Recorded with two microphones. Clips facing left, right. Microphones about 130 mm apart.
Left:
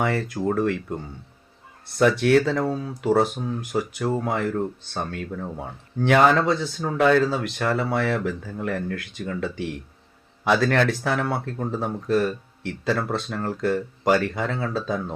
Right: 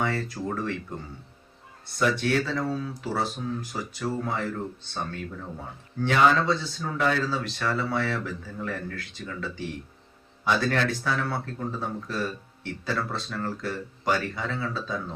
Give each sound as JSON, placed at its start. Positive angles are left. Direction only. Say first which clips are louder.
{"t": 0.0, "sound": "speech", "louder": "left 5 dB", "side_deg": 60}
{"t": 2.0, "sound": "speech", "louder": "left 7 dB", "side_deg": 60}